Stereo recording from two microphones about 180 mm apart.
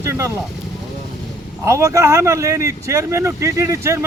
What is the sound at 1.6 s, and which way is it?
Speech, 15° right (ahead or behind).